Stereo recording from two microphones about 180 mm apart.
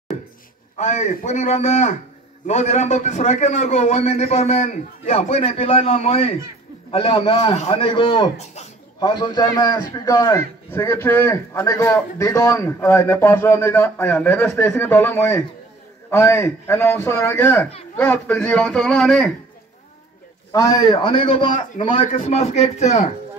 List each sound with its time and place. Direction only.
0.7 s a man's voice: 40° left (ahead or behind); by 19.3 s 5° left (ahead or behind)
20.5 s a man's voice: 20° left (ahead or behind)
21.5 s a man's voice: 40° left (ahead or behind)